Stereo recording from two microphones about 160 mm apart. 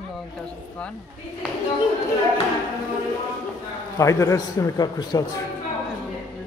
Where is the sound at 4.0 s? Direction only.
20° left (ahead or behind).